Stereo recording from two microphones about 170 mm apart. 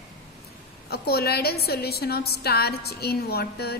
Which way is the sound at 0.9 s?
70° left (ahead or behind).